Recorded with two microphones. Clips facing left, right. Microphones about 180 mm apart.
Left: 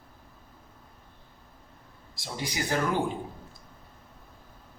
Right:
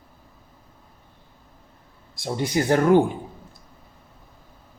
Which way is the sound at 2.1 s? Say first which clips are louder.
Right 10 dB; 55° right (ahead or behind).